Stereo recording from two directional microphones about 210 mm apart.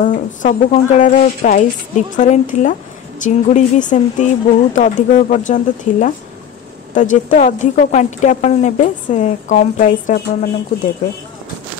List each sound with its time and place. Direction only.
0.0 s a woman's voice: 40° left (ahead or behind)